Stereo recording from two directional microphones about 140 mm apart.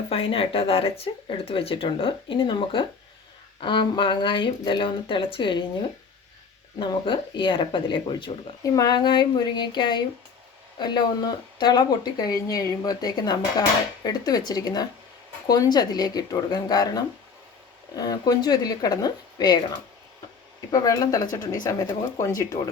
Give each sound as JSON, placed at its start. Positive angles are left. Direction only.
{"t": 0.1, "sound": "speech", "side_deg": 40}
{"t": 6.7, "sound": "speech", "side_deg": 30}
{"t": 8.6, "sound": "speech", "side_deg": 25}
{"t": 20.7, "sound": "speech", "side_deg": 25}